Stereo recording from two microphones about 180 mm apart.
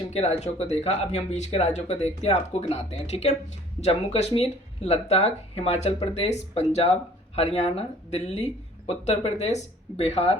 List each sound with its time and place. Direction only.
0.1 s speech: 35° left (ahead or behind)